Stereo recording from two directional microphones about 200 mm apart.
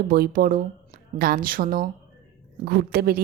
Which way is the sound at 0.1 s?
45° right (ahead or behind).